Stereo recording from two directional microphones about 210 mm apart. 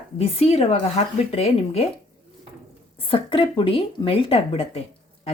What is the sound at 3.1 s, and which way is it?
Speech, 25° left (ahead or behind).